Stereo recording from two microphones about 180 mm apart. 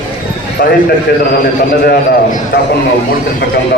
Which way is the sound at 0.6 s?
55° left (ahead or behind).